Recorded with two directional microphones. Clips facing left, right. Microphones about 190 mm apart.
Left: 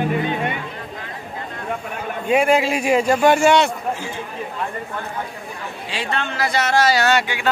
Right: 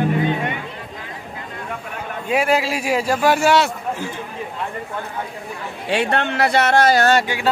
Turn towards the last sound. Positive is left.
turn(degrees=-40)  # may be behind; listen again after turning